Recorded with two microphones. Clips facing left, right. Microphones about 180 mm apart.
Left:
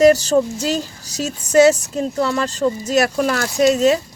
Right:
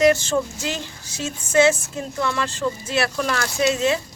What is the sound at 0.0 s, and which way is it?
Speech, 40° left (ahead or behind).